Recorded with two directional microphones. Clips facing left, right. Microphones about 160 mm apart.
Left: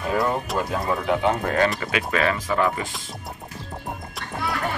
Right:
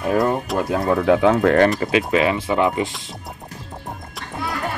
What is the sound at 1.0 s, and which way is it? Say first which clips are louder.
Speech: right 9 dB; 90° right.